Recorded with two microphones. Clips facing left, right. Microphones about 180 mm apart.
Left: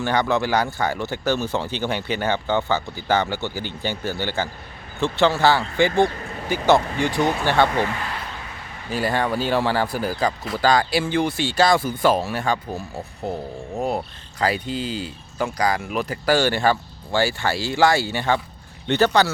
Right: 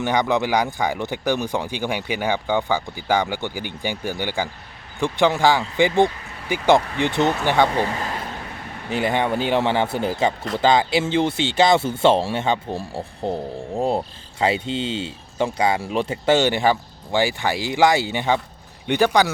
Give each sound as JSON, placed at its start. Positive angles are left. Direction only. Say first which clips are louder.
{"t": 0.0, "sound": "speech", "louder": "right 1 dB", "side_deg": -15}
{"t": 8.9, "sound": "speech", "louder": "right 1 dB", "side_deg": -20}